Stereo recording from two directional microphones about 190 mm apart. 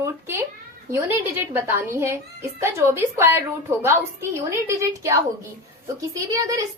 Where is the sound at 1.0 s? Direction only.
10° right (ahead or behind).